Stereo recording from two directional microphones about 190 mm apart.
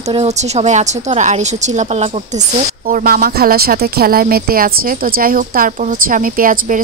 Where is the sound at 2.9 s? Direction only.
50° right (ahead or behind).